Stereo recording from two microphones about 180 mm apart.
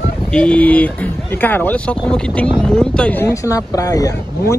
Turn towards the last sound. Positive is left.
turn(degrees=20)  # may be behind; listen again after turning